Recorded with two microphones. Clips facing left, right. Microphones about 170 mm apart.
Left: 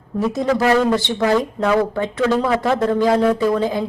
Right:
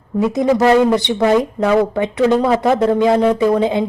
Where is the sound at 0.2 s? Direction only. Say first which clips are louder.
Right 4 dB; 20° right (ahead or behind).